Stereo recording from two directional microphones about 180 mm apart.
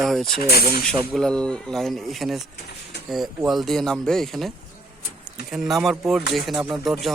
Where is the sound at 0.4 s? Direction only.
60° left (ahead or behind).